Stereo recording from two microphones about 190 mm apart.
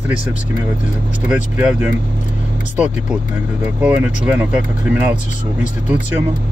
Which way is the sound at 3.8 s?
5° right (ahead or behind).